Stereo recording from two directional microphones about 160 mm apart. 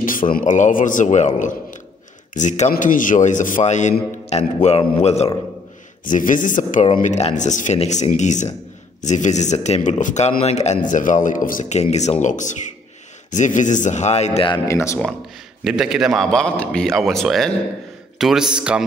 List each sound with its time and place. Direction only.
0.0 s a man's voice: 60° left (ahead or behind); by 5.3 s 40° left (ahead or behind)
6.0 s speech: 55° left (ahead or behind); by 14.6 s 35° left (ahead or behind)
14.7 s speech: 20° left (ahead or behind)
15.6 s speech: 5° right (ahead or behind)